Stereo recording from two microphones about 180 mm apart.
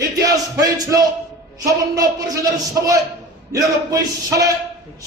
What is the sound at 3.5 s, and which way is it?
Speech, 20° right (ahead or behind).